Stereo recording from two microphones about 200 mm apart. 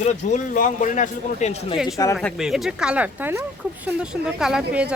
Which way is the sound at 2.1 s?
Centre (ahead or behind).